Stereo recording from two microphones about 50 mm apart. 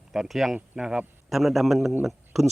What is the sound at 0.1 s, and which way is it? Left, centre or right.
Speech, centre.